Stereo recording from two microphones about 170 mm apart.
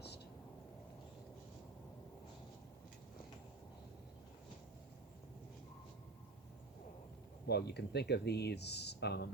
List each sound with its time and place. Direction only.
7.4 s speech: 70° left (ahead or behind)